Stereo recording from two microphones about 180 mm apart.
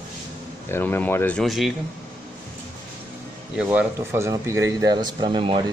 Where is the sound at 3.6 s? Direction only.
10° right (ahead or behind).